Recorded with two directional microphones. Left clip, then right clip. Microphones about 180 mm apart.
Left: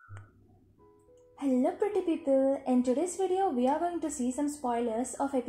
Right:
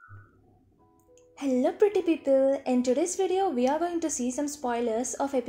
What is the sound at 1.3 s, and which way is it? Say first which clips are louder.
A woman's voice: right 4 dB; 30° right (ahead or behind).